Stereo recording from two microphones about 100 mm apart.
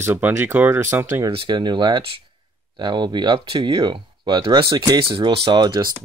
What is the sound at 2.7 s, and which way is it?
Speech, 45° right (ahead or behind).